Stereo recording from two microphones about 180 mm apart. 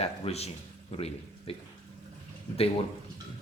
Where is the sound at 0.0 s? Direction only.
35° left (ahead or behind).